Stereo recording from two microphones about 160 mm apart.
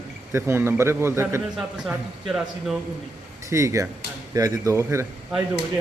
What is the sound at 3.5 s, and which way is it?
A man's voice, 20° right (ahead or behind).